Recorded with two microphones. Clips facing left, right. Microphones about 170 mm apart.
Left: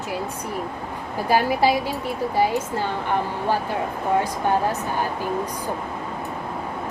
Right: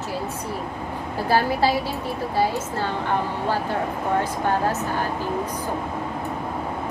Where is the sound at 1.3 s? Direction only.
15° left (ahead or behind).